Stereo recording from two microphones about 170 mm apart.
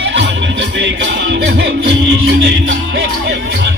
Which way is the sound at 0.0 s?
90° right.